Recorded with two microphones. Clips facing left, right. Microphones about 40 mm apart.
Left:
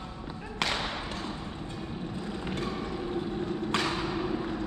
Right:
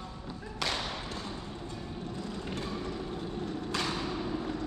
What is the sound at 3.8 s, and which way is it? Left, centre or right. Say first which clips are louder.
Thump: left 3 dB; left.